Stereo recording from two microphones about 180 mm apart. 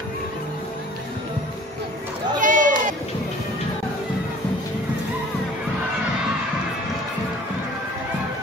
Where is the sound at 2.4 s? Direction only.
45° right (ahead or behind).